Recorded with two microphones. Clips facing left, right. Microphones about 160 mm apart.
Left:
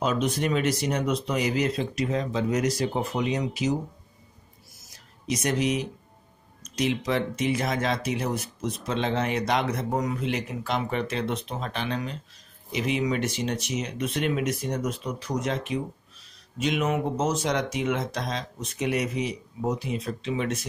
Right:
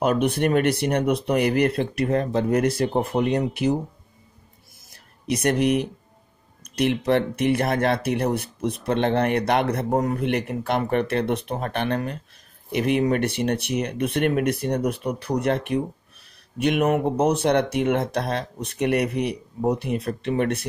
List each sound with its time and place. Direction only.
0.0 s speech: 60° right (ahead or behind)
5.2 s speech: 60° right (ahead or behind)